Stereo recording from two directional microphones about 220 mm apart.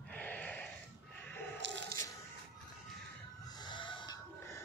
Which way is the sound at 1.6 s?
55° right (ahead or behind).